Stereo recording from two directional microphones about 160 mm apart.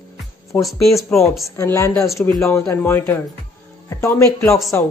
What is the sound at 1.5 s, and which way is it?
A man's voice, 20° left (ahead or behind).